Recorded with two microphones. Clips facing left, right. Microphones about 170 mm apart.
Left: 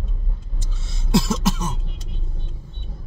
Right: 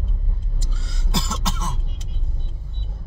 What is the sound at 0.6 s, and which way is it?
Cough, 20° left (ahead or behind).